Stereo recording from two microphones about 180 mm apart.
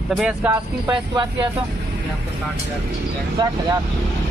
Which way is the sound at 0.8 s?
25° right (ahead or behind).